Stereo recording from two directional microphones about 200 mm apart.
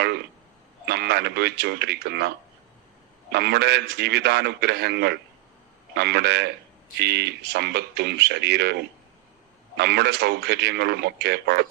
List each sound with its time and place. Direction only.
0.9 s speech: 55° right (ahead or behind)
3.3 s a man's voice: 55° right (ahead or behind)